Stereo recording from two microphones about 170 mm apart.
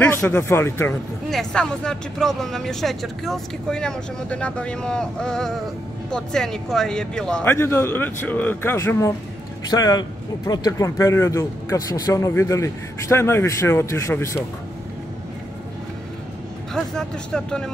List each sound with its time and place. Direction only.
0.0 s a man's voice: 10° left (ahead or behind)
1.3 s a man's voice: 5° left (ahead or behind)
16.7 s speech: 5° left (ahead or behind)